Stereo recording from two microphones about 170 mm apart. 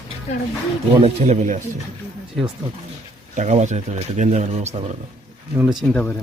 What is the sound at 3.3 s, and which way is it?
A man's voice, 45° right (ahead or behind).